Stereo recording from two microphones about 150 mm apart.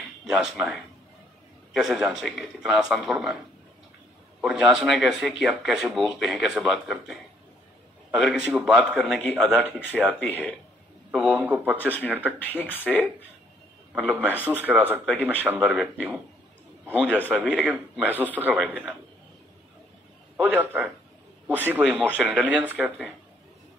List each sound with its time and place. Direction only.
0.3 s speech: 5° right (ahead or behind)
4.4 s speech: 5° right (ahead or behind)
12.6 s speech: 10° left (ahead or behind)
13.9 s a man's voice: 10° right (ahead or behind)
20.3 s speech: 10° right (ahead or behind)